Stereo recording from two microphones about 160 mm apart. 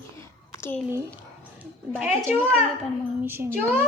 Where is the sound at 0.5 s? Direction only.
15° left (ahead or behind).